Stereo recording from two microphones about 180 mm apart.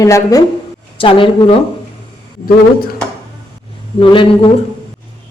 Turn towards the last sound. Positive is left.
turn(degrees=30)  # may be behind; listen again after turning